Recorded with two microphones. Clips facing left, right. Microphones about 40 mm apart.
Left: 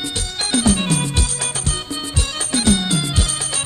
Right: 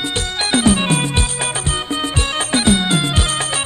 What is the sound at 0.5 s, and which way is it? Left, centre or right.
Music, right.